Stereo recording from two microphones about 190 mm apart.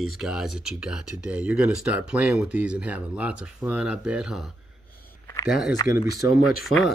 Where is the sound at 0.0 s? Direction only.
Centre (ahead or behind).